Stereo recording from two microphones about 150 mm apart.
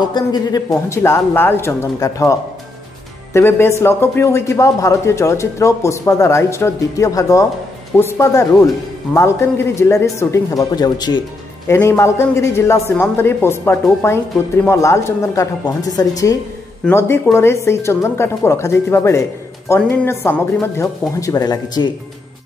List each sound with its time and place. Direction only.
0.1 s a man's voice: 25° left (ahead or behind)
3.3 s a man's voice: 15° left (ahead or behind)